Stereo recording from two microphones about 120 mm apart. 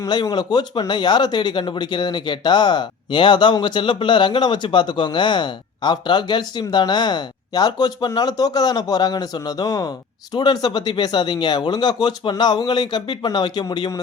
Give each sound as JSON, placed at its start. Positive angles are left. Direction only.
{"t": 0.0, "sound": "speech", "side_deg": 35}